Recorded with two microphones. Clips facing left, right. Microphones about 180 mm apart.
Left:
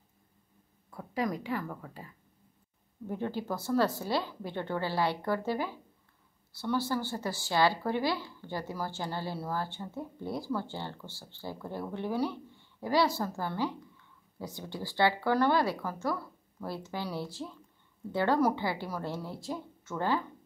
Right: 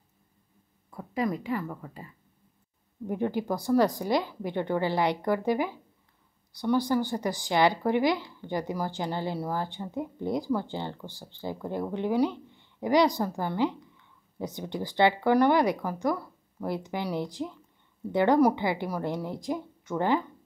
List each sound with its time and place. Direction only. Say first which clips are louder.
0.8 s speech: right 3 dB; 10° right (ahead or behind)
3.1 s speech: right 5 dB; 15° right (ahead or behind)